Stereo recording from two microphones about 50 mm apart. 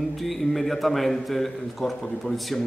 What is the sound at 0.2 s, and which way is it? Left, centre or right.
A man's voice, centre.